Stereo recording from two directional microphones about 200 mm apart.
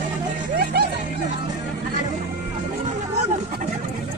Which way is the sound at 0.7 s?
55° right (ahead or behind).